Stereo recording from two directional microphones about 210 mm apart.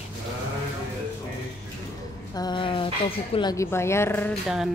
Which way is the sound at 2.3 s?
20° left (ahead or behind).